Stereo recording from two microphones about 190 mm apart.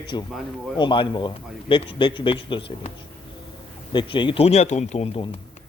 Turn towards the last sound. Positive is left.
turn(degrees=30)  # may be behind; listen again after turning